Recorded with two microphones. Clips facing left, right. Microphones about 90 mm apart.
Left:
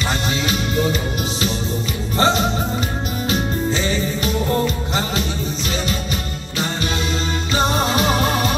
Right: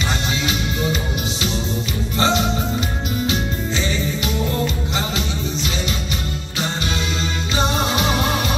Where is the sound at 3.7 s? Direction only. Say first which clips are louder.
Left 1 dB; 40° left (ahead or behind).